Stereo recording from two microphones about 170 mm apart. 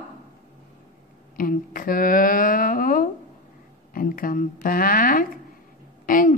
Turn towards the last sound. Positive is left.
turn(degrees=55)  # may be behind; listen again after turning